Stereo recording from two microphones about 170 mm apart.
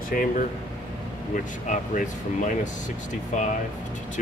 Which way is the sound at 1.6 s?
50° left (ahead or behind).